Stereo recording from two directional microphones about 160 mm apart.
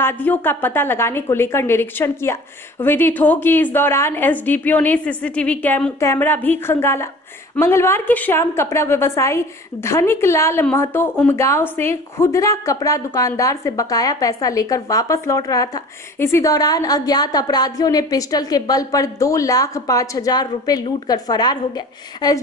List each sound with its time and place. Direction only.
0.0 s a woman's voice: 10° left (ahead or behind)